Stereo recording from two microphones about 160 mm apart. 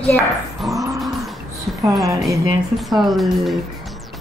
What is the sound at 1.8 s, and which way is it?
Speech, 20° right (ahead or behind).